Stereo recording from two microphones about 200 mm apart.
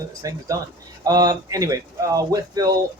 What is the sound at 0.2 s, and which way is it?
Speech, 15° right (ahead or behind).